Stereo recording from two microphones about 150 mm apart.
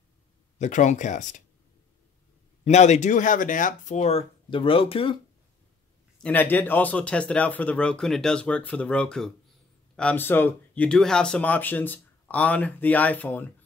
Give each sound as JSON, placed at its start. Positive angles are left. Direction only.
{"t": 0.6, "sound": "speech", "side_deg": 55}
{"t": 2.6, "sound": "speech", "side_deg": 50}
{"t": 4.5, "sound": "speech", "side_deg": 35}
{"t": 6.2, "sound": "speech", "side_deg": 10}